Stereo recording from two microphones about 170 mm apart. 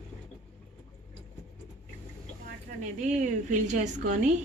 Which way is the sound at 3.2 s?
45° right (ahead or behind).